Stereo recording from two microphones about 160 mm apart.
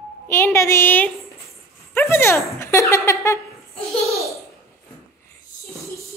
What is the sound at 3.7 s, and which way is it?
Laughter, centre (ahead or behind).